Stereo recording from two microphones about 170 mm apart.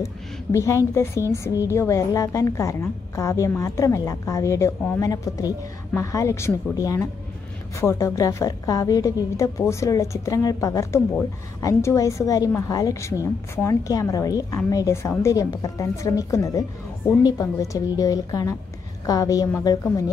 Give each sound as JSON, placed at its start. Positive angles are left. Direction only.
{"t": 0.0, "sound": "a woman's voice", "side_deg": 20}